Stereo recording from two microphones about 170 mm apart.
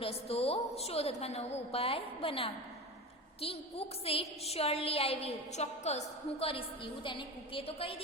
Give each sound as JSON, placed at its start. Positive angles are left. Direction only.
{"t": 0.3, "sound": "a woman's voice", "side_deg": 35}